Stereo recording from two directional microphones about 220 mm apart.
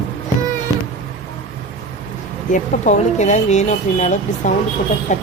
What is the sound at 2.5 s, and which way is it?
Speech, 30° left (ahead or behind).